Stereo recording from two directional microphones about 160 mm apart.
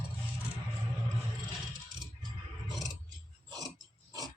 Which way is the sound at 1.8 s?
25° right (ahead or behind).